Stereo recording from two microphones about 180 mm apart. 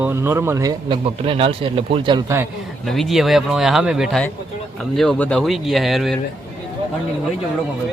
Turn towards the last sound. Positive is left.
turn(degrees=0)  # may be behind; listen again after turning